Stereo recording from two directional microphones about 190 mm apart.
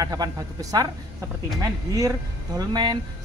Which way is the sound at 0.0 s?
20° right (ahead or behind).